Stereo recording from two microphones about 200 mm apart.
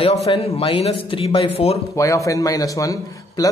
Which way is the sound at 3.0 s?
15° left (ahead or behind).